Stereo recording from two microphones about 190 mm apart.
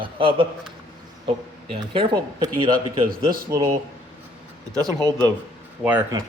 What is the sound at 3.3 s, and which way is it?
Speech, 50° right (ahead or behind).